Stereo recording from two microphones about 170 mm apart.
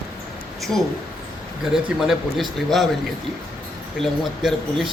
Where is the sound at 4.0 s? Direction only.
Centre (ahead or behind).